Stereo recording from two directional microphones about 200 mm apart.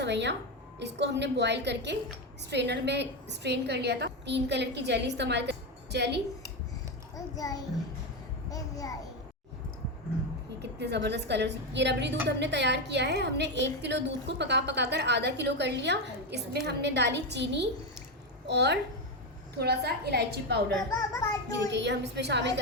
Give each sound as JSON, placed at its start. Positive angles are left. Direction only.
{"t": 0.0, "sound": "a woman's voice", "side_deg": -60}
{"t": 7.3, "sound": "a child's voice", "side_deg": 20}
{"t": 10.6, "sound": "a woman's voice", "side_deg": -55}
{"t": 20.9, "sound": "a child's voice", "side_deg": 15}
{"t": 21.7, "sound": "a woman's voice", "side_deg": -60}